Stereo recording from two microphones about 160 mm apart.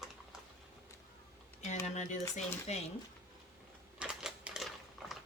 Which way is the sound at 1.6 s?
45° left (ahead or behind).